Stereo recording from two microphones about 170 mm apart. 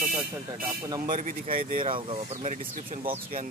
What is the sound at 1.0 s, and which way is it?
Speech, 50° right (ahead or behind).